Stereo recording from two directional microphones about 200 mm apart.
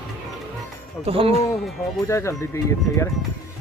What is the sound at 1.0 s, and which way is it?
Speech, 30° right (ahead or behind).